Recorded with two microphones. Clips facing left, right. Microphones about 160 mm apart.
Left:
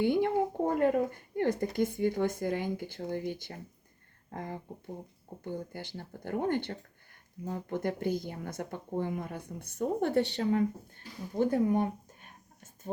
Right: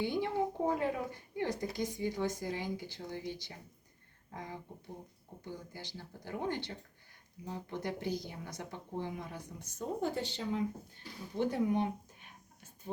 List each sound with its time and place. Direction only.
0.0 s a woman's voice: 55° left (ahead or behind)
11.3 s speech: 45° left (ahead or behind)